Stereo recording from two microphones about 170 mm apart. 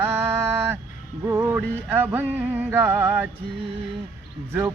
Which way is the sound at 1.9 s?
10° right (ahead or behind).